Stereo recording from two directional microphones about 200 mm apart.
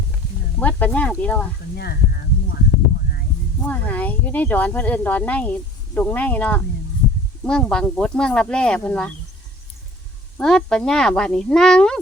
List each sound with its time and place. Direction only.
0.6 s speech: 10° left (ahead or behind)
1.7 s speech: 50° left (ahead or behind)
3.7 s speech: 10° left (ahead or behind)
10.3 s speech: 5° left (ahead or behind)